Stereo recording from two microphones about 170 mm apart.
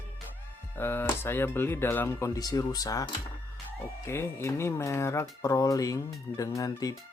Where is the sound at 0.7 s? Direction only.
15° left (ahead or behind).